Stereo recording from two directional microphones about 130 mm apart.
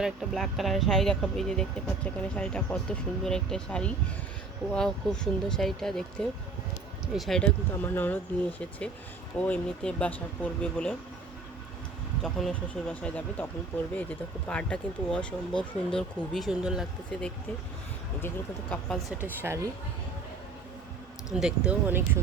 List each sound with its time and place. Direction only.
0.0 s speech: centre (ahead or behind)
12.2 s speech: 5° left (ahead or behind)
17.1 s speech: 5° left (ahead or behind)
19.2 s speech: 20° right (ahead or behind)
21.3 s speech: 5° right (ahead or behind)